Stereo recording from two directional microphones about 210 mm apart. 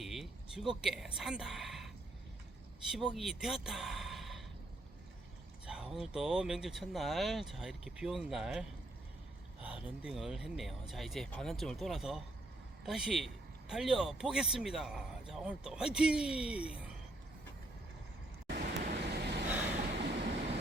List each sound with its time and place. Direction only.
0.0 s speech: centre (ahead or behind)
2.9 s speech: centre (ahead or behind)
5.6 s a man's voice: 5° right (ahead or behind)
9.6 s a man's voice: 5° right (ahead or behind)
18.4 s vehicle: 45° right (ahead or behind)